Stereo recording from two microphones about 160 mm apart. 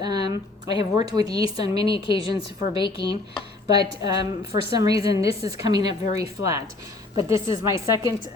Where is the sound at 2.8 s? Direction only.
30° left (ahead or behind).